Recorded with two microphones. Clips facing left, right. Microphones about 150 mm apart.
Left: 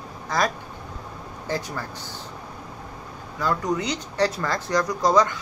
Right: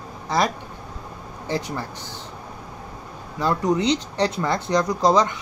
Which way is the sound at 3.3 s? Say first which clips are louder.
Right 3 dB; 25° right (ahead or behind).